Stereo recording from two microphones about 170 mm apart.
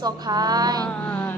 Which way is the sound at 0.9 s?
5° left (ahead or behind).